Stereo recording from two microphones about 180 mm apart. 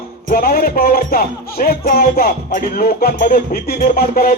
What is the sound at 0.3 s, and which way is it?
Music, 55° left (ahead or behind).